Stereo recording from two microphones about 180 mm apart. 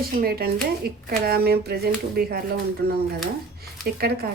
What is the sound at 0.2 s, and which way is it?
Speech, 60° right (ahead or behind).